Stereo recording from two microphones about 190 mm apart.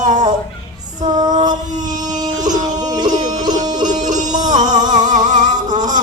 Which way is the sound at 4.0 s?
40° right (ahead or behind).